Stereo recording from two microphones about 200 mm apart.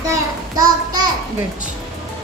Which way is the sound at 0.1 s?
20° right (ahead or behind).